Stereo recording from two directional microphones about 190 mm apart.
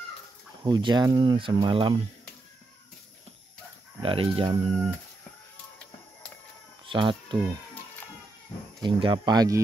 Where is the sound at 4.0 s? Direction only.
30° right (ahead or behind).